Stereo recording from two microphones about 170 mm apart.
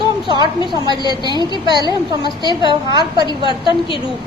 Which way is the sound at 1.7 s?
25° right (ahead or behind).